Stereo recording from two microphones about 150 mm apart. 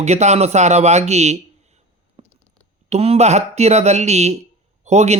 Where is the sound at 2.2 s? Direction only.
45° right (ahead or behind).